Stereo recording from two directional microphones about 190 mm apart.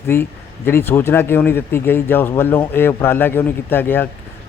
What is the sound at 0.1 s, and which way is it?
Speech, 10° left (ahead or behind).